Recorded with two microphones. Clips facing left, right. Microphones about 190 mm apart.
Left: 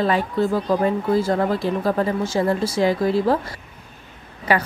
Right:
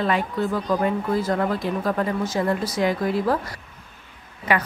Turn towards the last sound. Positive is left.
turn(degrees=35)  # may be behind; listen again after turning